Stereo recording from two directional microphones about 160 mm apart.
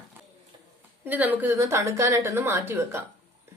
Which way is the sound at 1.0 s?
10° right (ahead or behind).